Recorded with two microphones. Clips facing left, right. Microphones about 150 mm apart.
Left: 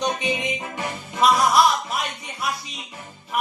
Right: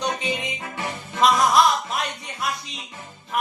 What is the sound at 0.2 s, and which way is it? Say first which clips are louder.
Music: left 3 dB; 15° left (ahead or behind).